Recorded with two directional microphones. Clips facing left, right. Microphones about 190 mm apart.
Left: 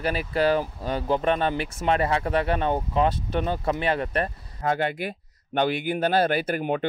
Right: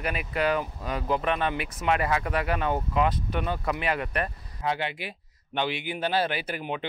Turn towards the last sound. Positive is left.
turn(degrees=45)  # may be behind; listen again after turning